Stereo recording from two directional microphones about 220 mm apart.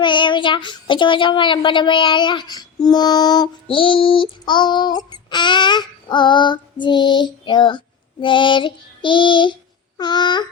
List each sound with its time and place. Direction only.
0.0 s speech: 20° left (ahead or behind)